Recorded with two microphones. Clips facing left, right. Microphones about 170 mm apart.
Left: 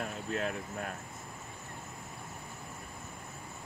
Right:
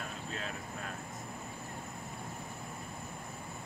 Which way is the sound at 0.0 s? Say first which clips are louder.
Left 6 dB; 60° left (ahead or behind).